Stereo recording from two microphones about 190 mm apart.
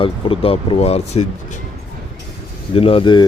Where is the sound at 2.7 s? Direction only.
30° left (ahead or behind).